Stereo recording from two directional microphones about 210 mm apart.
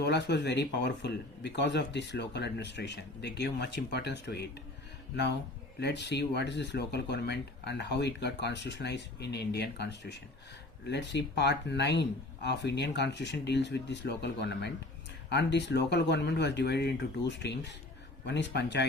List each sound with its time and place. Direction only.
0.0 s speech: 55° left (ahead or behind)
5.8 s speech: 55° left (ahead or behind)